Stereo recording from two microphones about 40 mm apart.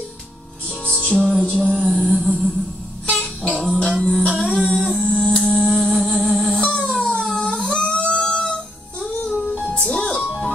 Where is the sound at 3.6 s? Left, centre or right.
Centre.